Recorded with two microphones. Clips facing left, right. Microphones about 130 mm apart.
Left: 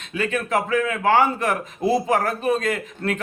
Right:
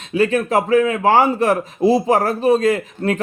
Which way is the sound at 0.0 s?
35° right (ahead or behind).